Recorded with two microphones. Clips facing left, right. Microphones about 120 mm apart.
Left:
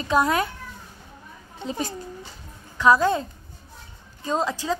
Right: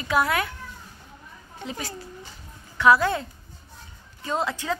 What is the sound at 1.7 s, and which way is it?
A woman's voice, 20° left (ahead or behind).